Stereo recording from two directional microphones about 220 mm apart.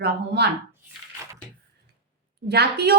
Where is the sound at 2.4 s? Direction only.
50° right (ahead or behind).